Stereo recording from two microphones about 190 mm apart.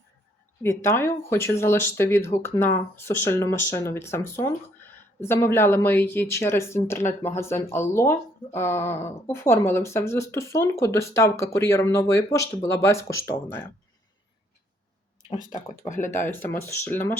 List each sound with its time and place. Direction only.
0.6 s speech: 15° left (ahead or behind)
15.3 s speech: 45° left (ahead or behind)
16.0 s speech: 10° left (ahead or behind)